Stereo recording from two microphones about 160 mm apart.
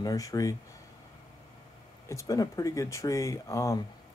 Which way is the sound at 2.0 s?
20° left (ahead or behind).